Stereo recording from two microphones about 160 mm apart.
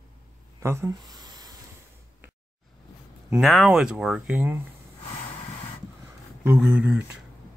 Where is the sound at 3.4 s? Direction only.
Centre (ahead or behind).